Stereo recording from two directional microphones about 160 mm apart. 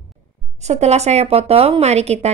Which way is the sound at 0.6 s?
45° right (ahead or behind).